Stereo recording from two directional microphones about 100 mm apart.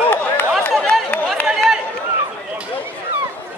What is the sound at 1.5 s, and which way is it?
Run, 5° right (ahead or behind).